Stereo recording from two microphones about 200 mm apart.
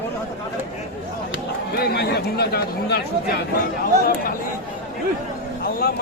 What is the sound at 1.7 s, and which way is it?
Speech, 55° left (ahead or behind).